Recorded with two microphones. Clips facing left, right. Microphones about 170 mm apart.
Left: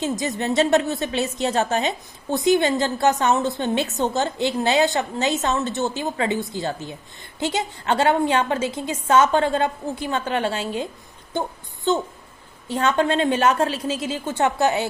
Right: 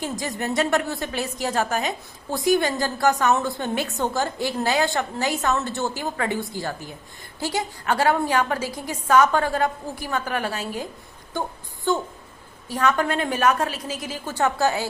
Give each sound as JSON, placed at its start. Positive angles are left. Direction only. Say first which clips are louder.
{"t": 0.0, "sound": "a woman's voice", "louder": "left 4 dB", "side_deg": 20}
{"t": 11.9, "sound": "a woman's voice", "louder": "left 2 dB", "side_deg": 20}